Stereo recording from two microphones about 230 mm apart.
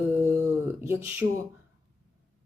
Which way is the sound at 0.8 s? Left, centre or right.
Centre.